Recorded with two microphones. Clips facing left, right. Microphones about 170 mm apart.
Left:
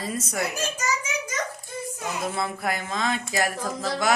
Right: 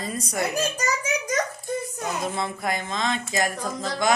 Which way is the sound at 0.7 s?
35° right (ahead or behind).